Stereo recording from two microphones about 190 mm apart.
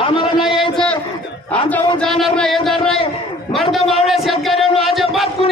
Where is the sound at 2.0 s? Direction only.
5° left (ahead or behind).